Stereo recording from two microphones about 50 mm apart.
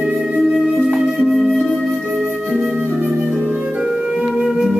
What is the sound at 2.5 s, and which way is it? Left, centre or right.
Flute, centre.